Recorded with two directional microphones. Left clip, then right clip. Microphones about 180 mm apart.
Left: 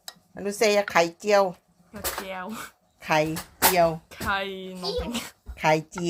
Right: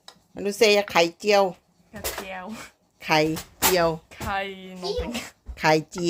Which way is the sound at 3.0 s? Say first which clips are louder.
Right 2 dB; 25° right (ahead or behind).